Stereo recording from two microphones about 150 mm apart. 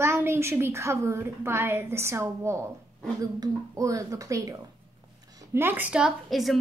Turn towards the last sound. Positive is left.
turn(degrees=0)  # may be behind; listen again after turning